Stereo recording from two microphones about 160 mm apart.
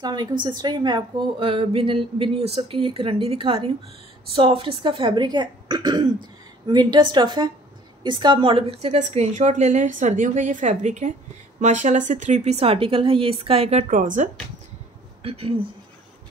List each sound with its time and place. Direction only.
0.0 s a woman's voice: 25° right (ahead or behind); by 14.3 s 55° right (ahead or behind)
15.2 s a woman's voice: 35° right (ahead or behind)